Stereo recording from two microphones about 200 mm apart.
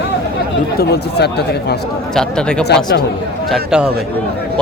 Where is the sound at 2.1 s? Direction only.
5° left (ahead or behind).